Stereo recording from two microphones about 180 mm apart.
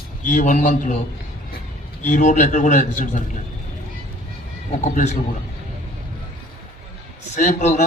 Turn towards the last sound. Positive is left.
turn(degrees=40)  # may be behind; listen again after turning